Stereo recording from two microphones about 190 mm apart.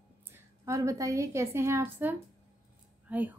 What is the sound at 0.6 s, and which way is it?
A woman's voice, 15° right (ahead or behind).